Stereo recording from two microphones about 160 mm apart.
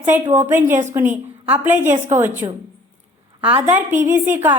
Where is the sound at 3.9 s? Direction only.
50° right (ahead or behind).